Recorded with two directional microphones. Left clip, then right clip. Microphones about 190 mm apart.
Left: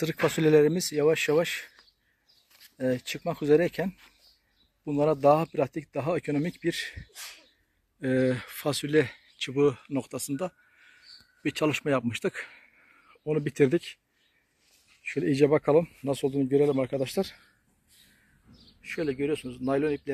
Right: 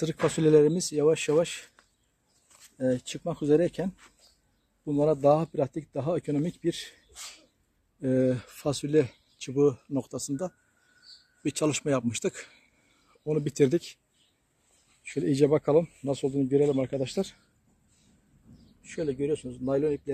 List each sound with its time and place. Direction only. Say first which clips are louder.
0.0 s speech: even; centre (ahead or behind)
8.0 s speech: even; centre (ahead or behind)
11.1 s a sound: even; 50° left (ahead or behind)
11.4 s speech: left 1 dB; centre (ahead or behind)
15.0 s speech: left 1 dB; 5° left (ahead or behind)
18.8 s speech: left 1 dB; centre (ahead or behind)